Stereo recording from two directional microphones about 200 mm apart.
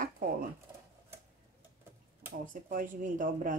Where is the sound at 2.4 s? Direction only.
40° right (ahead or behind).